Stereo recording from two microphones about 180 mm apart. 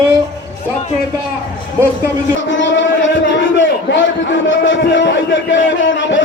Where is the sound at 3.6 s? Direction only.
90° left.